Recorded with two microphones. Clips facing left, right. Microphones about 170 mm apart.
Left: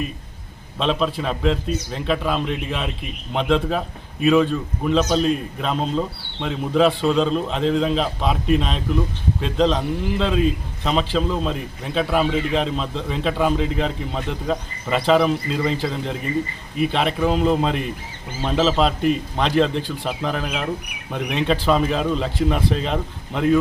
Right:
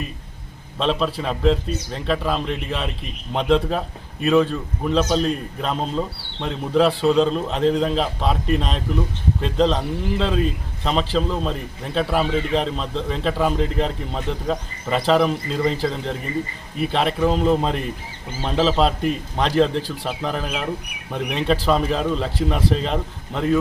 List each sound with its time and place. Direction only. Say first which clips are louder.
0.8 s a man's voice: even; centre (ahead or behind)